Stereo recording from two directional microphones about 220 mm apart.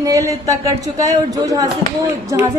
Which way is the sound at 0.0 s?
15° right (ahead or behind).